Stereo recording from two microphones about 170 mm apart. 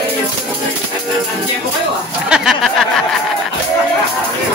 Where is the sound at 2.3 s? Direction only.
5° right (ahead or behind).